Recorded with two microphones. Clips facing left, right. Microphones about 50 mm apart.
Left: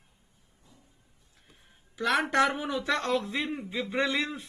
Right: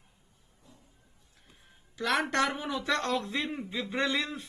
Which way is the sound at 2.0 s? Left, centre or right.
Centre.